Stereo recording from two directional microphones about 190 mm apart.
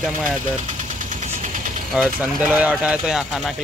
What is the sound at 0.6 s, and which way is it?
Vehicle, 40° right (ahead or behind).